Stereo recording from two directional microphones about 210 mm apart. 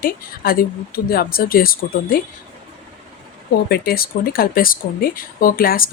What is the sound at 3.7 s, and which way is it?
Speech, 45° left (ahead or behind).